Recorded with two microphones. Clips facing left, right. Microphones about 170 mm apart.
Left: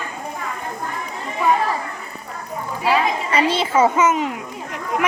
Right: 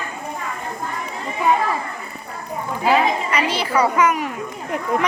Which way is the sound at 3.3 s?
25° left (ahead or behind).